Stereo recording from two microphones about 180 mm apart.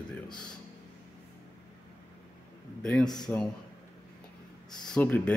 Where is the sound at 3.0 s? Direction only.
25° left (ahead or behind).